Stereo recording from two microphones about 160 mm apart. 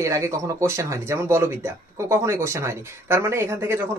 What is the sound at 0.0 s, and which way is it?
Speech, 20° right (ahead or behind).